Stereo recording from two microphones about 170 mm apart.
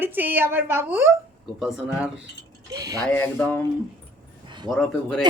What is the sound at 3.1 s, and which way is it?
Speech, 10° left (ahead or behind).